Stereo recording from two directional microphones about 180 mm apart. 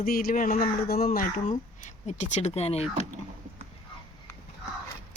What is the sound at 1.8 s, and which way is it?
Speech, 40° left (ahead or behind).